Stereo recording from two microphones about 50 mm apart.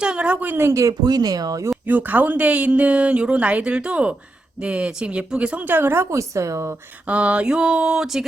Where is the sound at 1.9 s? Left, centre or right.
Right; by 5.5 s centre.